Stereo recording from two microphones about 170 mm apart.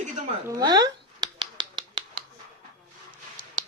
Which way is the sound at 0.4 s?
20° right (ahead or behind).